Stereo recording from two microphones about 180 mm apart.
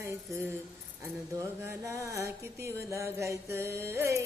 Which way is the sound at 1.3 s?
15° right (ahead or behind).